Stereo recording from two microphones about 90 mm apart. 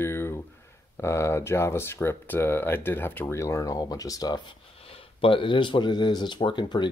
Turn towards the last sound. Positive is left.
turn(degrees=60)  # may be behind; listen again after turning